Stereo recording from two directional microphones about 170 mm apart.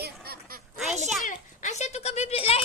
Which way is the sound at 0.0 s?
65° right (ahead or behind).